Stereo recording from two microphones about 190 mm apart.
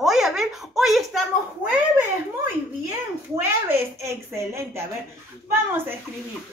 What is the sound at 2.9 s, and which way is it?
A woman's voice, 10° right (ahead or behind).